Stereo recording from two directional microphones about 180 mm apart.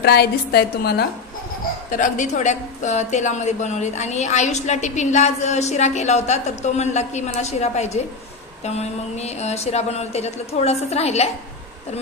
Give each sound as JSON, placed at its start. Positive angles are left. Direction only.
{"t": 0.0, "sound": "a woman's voice", "side_deg": 65}
{"t": 1.9, "sound": "a woman's voice", "side_deg": 45}